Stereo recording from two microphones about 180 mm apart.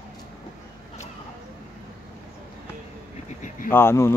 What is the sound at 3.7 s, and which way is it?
Speech, 15° left (ahead or behind).